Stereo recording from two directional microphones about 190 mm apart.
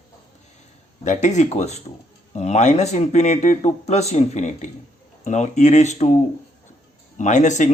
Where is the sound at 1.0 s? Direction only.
40° left (ahead or behind).